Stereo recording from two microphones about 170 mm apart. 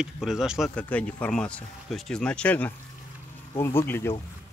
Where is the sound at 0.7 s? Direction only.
10° left (ahead or behind).